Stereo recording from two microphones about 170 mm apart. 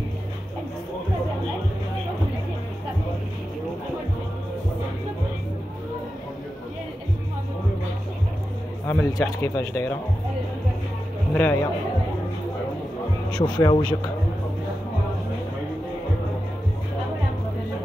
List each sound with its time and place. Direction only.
8.8 s speech: 15° left (ahead or behind)
11.3 s speech: 15° left (ahead or behind)
13.4 s speech: 25° left (ahead or behind)